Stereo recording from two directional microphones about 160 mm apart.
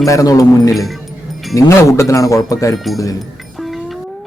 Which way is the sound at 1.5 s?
20° left (ahead or behind).